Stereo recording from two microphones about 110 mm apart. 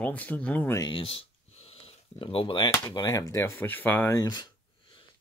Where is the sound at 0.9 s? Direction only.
55° left (ahead or behind).